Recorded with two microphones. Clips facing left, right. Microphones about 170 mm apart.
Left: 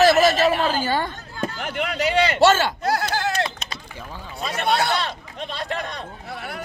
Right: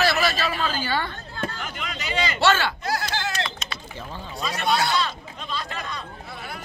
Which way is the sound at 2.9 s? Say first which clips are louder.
Left 6 dB; 55° left (ahead or behind).